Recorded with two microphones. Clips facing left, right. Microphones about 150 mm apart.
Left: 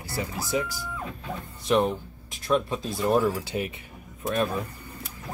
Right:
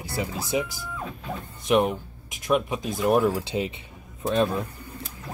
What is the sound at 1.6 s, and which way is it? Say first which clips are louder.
Speech: right 1 dB; 15° right (ahead or behind).